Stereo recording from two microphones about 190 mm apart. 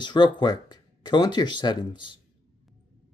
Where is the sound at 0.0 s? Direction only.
20° left (ahead or behind).